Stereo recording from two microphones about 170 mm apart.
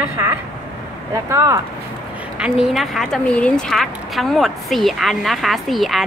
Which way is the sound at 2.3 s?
5° right (ahead or behind).